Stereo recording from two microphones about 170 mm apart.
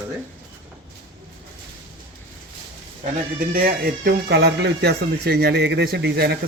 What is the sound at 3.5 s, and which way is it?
Speech, 60° right (ahead or behind).